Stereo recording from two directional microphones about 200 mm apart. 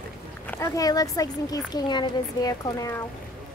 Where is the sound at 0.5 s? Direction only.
15° left (ahead or behind).